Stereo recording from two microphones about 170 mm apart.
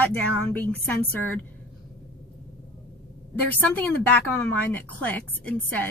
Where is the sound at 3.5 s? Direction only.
10° left (ahead or behind).